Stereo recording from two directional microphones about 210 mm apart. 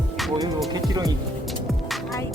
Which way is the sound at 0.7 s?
15° right (ahead or behind).